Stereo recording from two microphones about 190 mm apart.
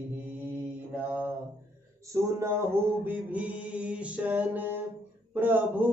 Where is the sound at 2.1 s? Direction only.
15° right (ahead or behind).